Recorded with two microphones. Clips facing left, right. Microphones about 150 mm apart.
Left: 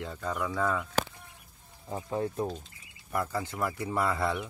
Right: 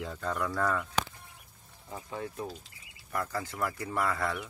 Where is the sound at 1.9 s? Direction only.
30° left (ahead or behind).